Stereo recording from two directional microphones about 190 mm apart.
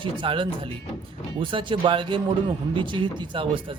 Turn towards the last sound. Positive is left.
turn(degrees=-25)  # may be behind; listen again after turning